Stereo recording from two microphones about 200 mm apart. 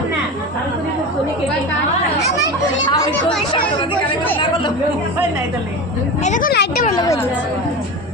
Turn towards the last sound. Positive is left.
turn(degrees=50)  # may be behind; listen again after turning